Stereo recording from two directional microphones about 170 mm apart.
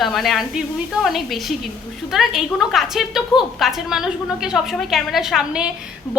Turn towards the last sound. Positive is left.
turn(degrees=-5)  # may be behind; listen again after turning